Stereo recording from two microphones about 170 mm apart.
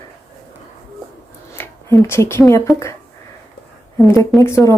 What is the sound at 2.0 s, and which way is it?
Speech, 15° left (ahead or behind).